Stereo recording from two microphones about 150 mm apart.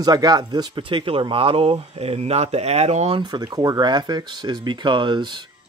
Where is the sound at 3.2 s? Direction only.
25° right (ahead or behind).